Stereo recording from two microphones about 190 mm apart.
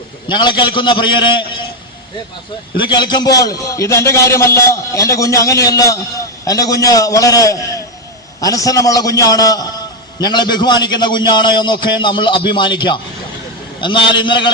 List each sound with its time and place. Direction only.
0.3 s a man's voice: 25° left (ahead or behind)
2.7 s a man's voice: 25° left (ahead or behind)